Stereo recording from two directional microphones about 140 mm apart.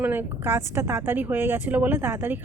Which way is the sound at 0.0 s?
15° right (ahead or behind).